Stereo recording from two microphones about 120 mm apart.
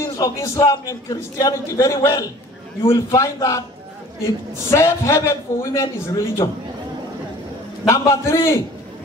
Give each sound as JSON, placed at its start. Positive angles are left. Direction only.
{"t": 0.2, "sound": "a man's voice", "side_deg": 25}
{"t": 4.6, "sound": "a man's voice", "side_deg": 20}
{"t": 7.9, "sound": "a man's voice", "side_deg": 25}